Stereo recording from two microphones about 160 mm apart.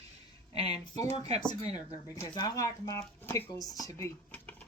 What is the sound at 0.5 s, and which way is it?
Speech, 25° left (ahead or behind).